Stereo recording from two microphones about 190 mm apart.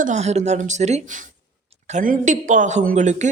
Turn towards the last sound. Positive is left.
turn(degrees=-40)  # may be behind; listen again after turning